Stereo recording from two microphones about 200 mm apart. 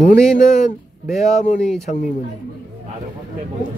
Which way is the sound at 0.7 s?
40° left (ahead or behind).